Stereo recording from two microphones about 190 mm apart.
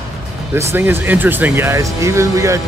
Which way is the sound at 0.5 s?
15° right (ahead or behind).